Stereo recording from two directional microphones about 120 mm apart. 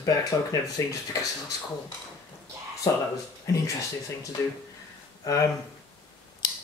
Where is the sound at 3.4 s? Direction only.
25° left (ahead or behind).